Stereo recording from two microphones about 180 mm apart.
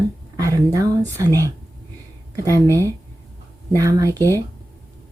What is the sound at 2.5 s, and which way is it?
Speech, 15° left (ahead or behind).